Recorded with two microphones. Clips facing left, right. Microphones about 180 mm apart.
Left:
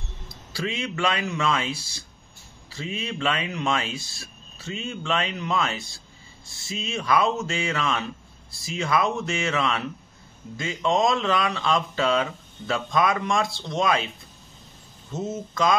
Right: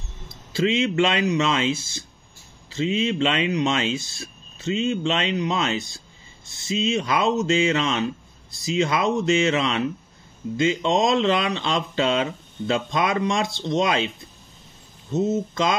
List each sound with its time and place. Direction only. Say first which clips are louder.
0.3 s speech: right 9 dB; 20° right (ahead or behind)
15.1 s speech: right 6 dB; 25° right (ahead or behind)